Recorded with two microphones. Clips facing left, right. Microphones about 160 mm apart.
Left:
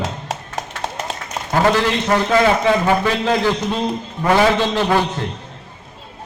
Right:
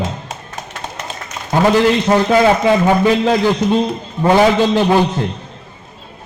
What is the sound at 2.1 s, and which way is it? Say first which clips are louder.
Speech: right 2 dB; 25° right (ahead or behind).